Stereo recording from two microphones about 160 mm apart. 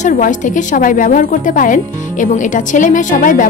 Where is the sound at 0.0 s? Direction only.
50° left (ahead or behind).